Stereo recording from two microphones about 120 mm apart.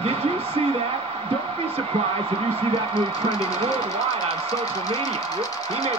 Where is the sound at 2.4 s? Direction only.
50° right (ahead or behind).